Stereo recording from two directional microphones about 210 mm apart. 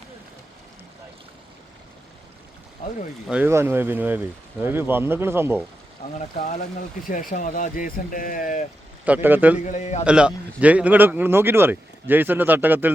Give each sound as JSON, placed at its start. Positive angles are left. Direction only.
{"t": 3.2, "sound": "speech", "side_deg": -10}
{"t": 7.1, "sound": "speech", "side_deg": 40}
{"t": 9.0, "sound": "speech", "side_deg": -10}
{"t": 9.6, "sound": "speech", "side_deg": 35}
{"t": 10.0, "sound": "speech", "side_deg": -5}